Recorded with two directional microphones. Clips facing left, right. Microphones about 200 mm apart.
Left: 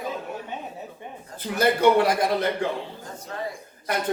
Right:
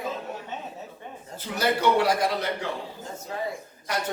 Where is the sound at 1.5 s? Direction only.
55° left (ahead or behind).